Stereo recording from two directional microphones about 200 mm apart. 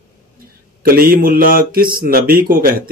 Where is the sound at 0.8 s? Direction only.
45° right (ahead or behind).